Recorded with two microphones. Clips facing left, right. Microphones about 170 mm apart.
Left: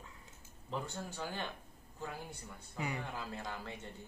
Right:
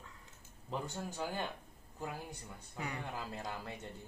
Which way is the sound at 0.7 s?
10° right (ahead or behind).